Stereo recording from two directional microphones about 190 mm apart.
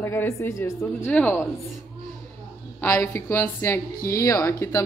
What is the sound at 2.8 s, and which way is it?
Speech, 15° left (ahead or behind).